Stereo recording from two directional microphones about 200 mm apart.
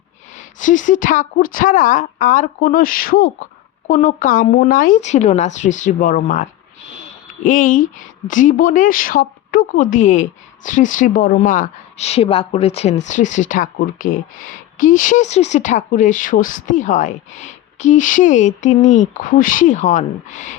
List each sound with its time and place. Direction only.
0.3 s a woman's voice: 40° left (ahead or behind)